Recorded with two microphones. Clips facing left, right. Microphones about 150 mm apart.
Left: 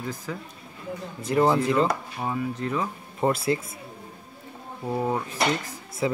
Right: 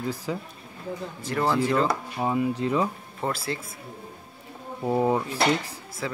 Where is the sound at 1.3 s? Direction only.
25° left (ahead or behind).